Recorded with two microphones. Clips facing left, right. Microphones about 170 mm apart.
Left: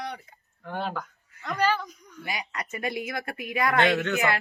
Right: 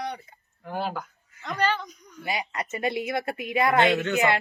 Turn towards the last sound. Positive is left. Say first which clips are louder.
# right 2 dB
turn(degrees=-25)  # may be behind; listen again after turning